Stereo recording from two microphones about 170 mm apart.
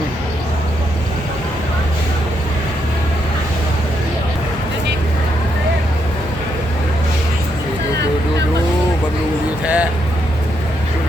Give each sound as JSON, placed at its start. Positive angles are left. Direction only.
{"t": 9.6, "sound": "music", "side_deg": -10}